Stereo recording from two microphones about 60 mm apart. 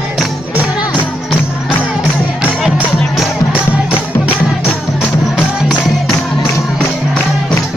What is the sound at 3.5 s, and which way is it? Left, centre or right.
Music, right.